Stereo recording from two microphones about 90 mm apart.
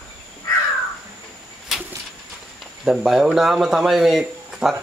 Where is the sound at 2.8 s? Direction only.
10° right (ahead or behind).